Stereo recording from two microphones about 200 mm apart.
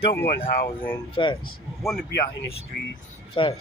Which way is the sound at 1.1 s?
25° left (ahead or behind).